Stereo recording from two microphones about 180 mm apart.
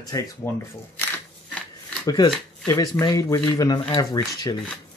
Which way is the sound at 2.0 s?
25° left (ahead or behind).